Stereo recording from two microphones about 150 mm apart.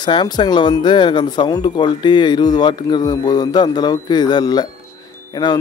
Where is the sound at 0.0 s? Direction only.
30° left (ahead or behind).